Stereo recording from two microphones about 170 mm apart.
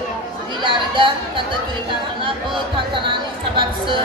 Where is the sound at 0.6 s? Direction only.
30° right (ahead or behind).